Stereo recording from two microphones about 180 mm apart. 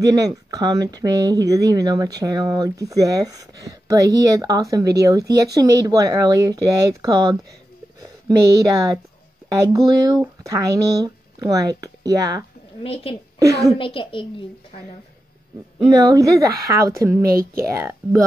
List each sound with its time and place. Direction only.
0.0 s speech: 20° right (ahead or behind)
12.8 s a woman's voice: 30° left (ahead or behind)
13.4 s a woman's voice: 20° right (ahead or behind)
13.7 s a child's voice: 30° left (ahead or behind)
15.9 s a woman's voice: 20° right (ahead or behind)
17.2 s speech: 55° right (ahead or behind)
17.6 s a woman's voice: 15° right (ahead or behind)